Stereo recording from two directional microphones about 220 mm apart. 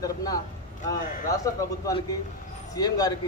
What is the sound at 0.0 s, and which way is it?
Speech, 15° left (ahead or behind).